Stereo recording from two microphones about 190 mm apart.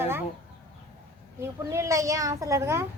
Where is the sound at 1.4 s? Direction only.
15° right (ahead or behind).